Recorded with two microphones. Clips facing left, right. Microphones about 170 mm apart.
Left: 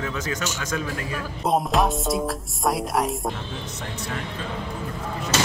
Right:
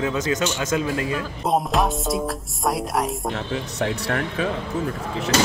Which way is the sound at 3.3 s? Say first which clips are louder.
Right 7 dB; 75° right (ahead or behind).